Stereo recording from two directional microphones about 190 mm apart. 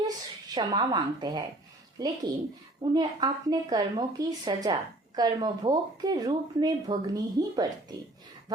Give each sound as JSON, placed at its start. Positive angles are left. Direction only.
{"t": 0.5, "sound": "speech", "side_deg": -20}